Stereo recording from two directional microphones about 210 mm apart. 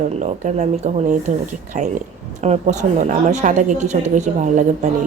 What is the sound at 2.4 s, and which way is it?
Speech, 35° right (ahead or behind).